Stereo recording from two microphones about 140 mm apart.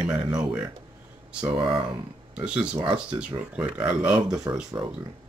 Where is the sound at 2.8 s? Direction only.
35° right (ahead or behind).